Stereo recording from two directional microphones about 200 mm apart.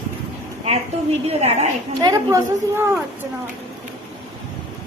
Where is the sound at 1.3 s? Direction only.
30° right (ahead or behind).